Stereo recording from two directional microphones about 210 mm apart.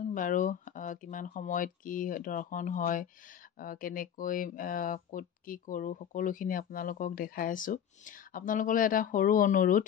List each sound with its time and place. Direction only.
0.1 s speech: 40° left (ahead or behind)